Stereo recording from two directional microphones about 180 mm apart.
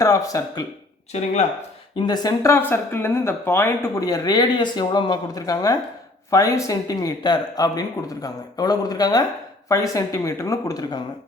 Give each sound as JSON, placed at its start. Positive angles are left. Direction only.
{"t": 0.0, "sound": "speech", "side_deg": 20}
{"t": 1.1, "sound": "speech", "side_deg": 35}
{"t": 2.0, "sound": "speech", "side_deg": 20}